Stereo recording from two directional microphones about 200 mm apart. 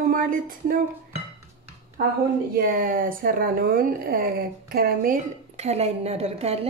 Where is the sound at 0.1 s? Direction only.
45° right (ahead or behind).